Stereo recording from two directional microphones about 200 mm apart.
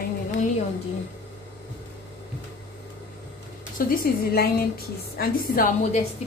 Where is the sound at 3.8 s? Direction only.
45° left (ahead or behind).